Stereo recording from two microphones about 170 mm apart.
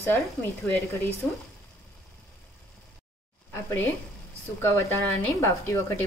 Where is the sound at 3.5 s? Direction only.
15° left (ahead or behind).